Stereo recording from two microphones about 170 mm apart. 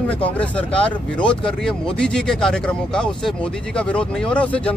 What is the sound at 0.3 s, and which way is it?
Speech, 5° left (ahead or behind).